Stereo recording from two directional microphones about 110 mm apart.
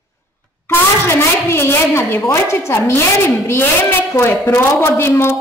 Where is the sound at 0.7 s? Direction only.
20° left (ahead or behind).